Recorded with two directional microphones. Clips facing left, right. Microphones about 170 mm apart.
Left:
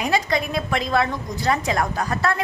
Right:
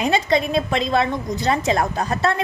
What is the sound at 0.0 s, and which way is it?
A woman's voice, 25° right (ahead or behind).